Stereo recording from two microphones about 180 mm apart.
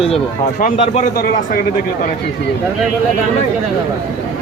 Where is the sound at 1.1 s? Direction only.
55° left (ahead or behind).